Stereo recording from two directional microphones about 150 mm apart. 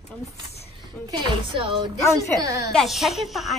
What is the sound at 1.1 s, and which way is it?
Speech, 30° right (ahead or behind).